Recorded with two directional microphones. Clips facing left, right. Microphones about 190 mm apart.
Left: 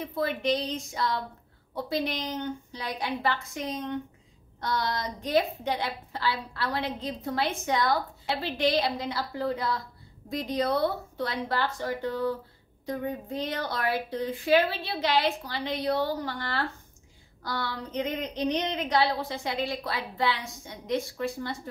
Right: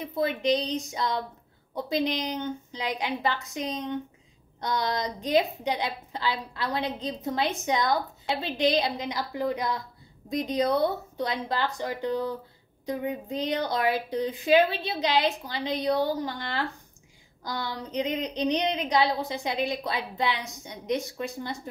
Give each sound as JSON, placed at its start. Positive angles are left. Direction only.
{"t": 0.1, "sound": "a woman's voice", "side_deg": -20}